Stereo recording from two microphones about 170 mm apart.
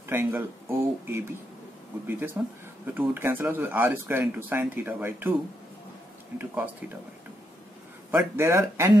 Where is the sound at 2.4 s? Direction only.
10° right (ahead or behind).